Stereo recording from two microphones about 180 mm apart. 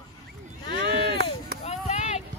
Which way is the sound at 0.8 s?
65° right (ahead or behind).